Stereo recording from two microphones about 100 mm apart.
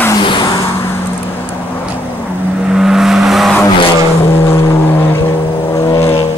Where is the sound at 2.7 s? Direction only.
5° right (ahead or behind).